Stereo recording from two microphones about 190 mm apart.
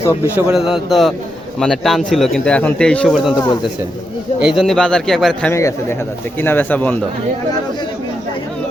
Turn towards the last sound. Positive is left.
turn(degrees=10)  # may be behind; listen again after turning